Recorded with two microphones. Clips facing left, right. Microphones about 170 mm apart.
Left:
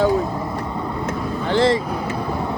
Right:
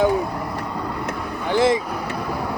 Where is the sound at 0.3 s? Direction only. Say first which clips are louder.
Left 2 dB; 20° left (ahead or behind).